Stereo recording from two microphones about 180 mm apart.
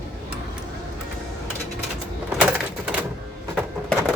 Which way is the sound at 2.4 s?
5° right (ahead or behind).